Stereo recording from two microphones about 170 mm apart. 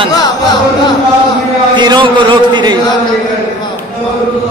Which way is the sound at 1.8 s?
25° right (ahead or behind).